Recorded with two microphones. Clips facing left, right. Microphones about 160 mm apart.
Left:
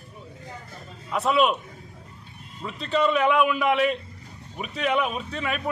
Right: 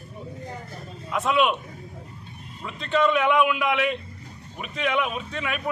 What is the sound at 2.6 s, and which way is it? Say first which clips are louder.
A man's voice: right 1 dB; centre (ahead or behind).